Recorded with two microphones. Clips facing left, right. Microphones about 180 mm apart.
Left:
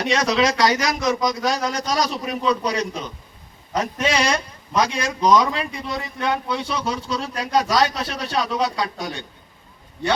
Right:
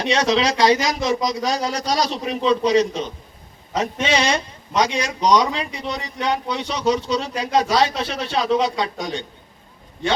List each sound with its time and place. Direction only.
0.0 s a man's voice: 30° right (ahead or behind)